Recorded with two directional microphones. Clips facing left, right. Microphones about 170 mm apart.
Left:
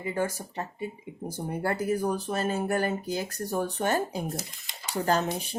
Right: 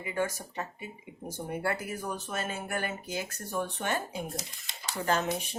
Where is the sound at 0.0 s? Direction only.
35° left (ahead or behind).